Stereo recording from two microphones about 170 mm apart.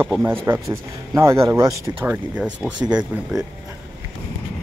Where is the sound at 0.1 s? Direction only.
10° right (ahead or behind).